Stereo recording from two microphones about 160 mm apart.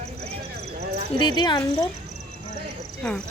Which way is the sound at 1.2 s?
25° left (ahead or behind).